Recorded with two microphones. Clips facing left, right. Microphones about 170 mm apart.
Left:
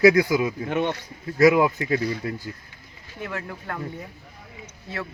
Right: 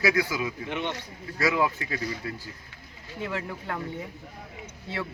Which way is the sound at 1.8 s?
35° left (ahead or behind).